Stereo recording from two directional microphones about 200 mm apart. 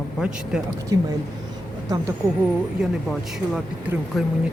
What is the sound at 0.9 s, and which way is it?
Speech, 15° right (ahead or behind).